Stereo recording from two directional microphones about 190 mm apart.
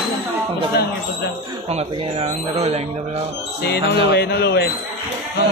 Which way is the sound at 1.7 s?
35° right (ahead or behind).